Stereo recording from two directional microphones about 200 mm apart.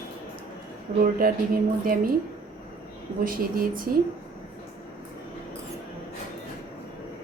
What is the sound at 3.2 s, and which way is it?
Speech, 45° right (ahead or behind).